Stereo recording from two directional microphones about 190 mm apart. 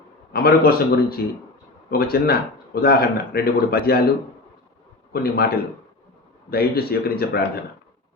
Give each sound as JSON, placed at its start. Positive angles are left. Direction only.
{"t": 0.3, "sound": "speech", "side_deg": 55}
{"t": 5.1, "sound": "speech", "side_deg": 55}